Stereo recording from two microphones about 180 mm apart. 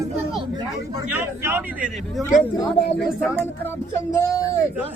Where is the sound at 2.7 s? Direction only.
65° left (ahead or behind).